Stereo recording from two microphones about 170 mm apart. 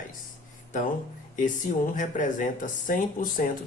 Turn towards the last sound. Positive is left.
turn(degrees=50)  # may be behind; listen again after turning